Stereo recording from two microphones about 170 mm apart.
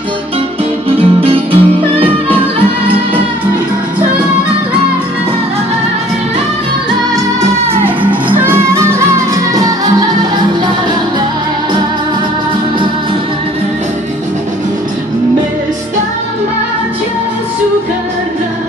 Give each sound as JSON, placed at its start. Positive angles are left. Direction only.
{"t": 0.8, "sound": "music", "side_deg": -30}
{"t": 7.8, "sound": "music", "side_deg": -10}